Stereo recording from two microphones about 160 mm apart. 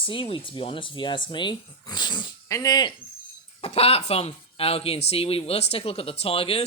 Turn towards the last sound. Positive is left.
turn(degrees=35)  # may be behind; listen again after turning